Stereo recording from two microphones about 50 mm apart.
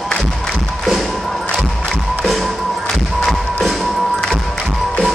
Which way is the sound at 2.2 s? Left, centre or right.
Centre.